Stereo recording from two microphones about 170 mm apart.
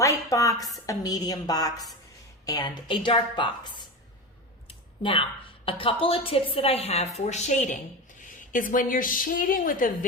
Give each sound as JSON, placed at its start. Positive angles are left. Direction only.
{"t": 0.0, "sound": "a woman's voice", "side_deg": 20}